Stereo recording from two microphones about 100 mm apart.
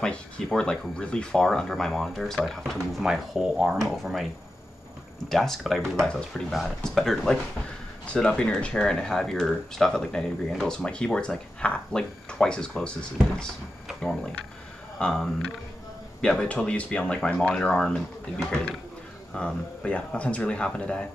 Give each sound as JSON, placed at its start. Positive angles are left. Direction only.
{"t": 0.0, "sound": "speech", "side_deg": 10}
{"t": 5.3, "sound": "speech", "side_deg": 0}